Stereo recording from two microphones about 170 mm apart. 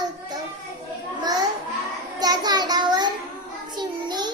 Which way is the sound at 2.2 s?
25° right (ahead or behind).